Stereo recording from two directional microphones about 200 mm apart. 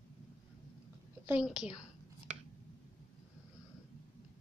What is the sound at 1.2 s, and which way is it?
Speech, 5° right (ahead or behind).